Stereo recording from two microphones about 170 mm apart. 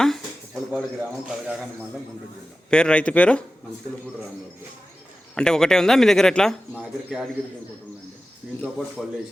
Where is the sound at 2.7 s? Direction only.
5° left (ahead or behind).